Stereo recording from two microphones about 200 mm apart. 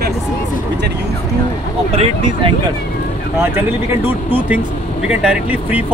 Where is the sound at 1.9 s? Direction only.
25° right (ahead or behind).